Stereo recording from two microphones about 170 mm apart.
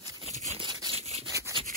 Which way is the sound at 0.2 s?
40° right (ahead or behind).